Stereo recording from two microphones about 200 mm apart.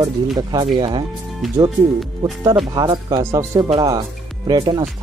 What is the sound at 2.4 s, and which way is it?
Speech, 20° right (ahead or behind).